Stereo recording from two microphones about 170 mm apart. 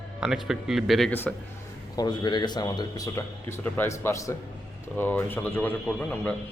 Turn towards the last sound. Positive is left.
turn(degrees=10)  # may be behind; listen again after turning